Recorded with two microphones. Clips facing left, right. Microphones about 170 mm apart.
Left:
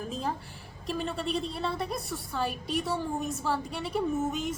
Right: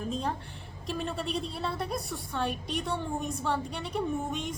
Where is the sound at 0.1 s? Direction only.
5° left (ahead or behind).